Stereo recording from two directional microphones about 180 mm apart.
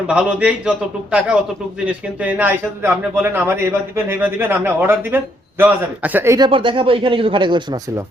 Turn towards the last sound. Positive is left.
turn(degrees=-20)  # may be behind; listen again after turning